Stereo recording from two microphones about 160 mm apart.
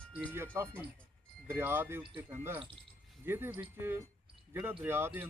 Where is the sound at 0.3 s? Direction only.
15° right (ahead or behind).